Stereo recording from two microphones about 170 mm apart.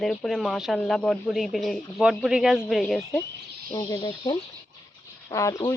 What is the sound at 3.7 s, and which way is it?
A woman's voice, 20° left (ahead or behind).